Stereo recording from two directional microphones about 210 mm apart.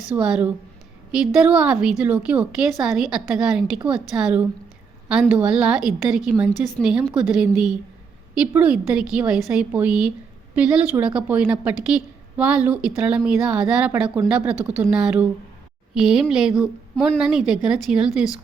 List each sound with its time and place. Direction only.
0.1 s a woman's voice: 5° right (ahead or behind)